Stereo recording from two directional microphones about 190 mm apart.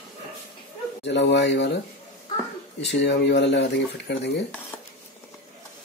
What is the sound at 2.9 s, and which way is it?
Speech, 65° left (ahead or behind).